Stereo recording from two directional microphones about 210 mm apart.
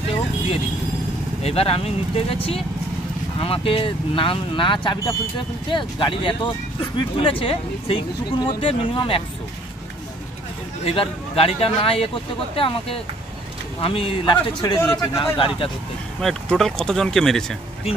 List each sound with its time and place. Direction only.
1.4 s speech: 30° left (ahead or behind)
10.8 s speech: 25° left (ahead or behind)
16.2 s speech: centre (ahead or behind)